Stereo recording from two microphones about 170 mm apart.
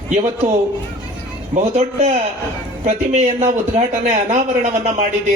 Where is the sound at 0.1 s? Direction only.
45° right (ahead or behind).